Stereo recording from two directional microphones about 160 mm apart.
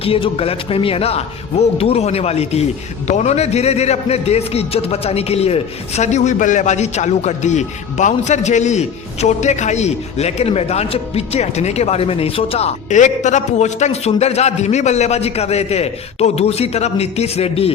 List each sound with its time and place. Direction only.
0.0 s speech: 35° left (ahead or behind)